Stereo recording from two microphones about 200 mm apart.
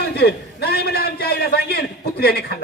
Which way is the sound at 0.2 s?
55° left (ahead or behind).